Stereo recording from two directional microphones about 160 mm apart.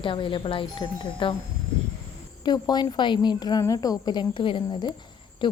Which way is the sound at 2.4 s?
25° left (ahead or behind).